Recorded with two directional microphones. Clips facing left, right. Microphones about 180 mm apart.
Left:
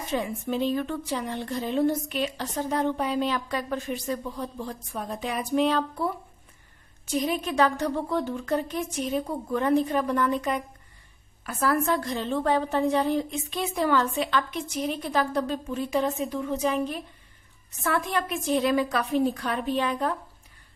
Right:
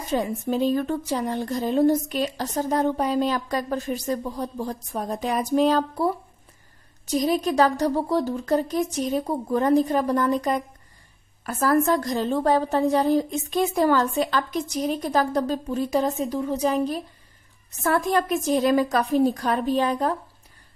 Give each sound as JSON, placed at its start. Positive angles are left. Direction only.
{"t": 0.1, "sound": "a woman's voice", "side_deg": -40}